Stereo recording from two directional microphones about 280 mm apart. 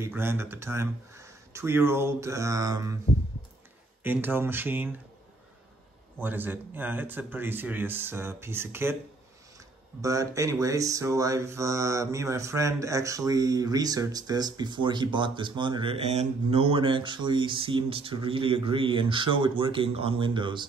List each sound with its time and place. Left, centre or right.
0.0 s speech: centre
4.0 s speech: centre
6.2 s speech: centre
10.0 s speech: centre